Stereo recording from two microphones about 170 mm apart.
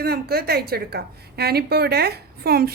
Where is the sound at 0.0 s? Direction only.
65° right (ahead or behind).